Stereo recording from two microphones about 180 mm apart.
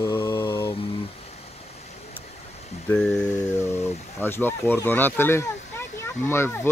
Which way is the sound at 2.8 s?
5° left (ahead or behind).